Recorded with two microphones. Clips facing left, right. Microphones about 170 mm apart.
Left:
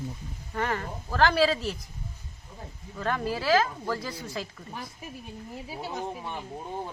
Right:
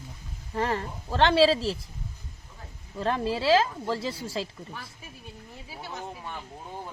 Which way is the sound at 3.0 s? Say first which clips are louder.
Right 2 dB; 30° right (ahead or behind).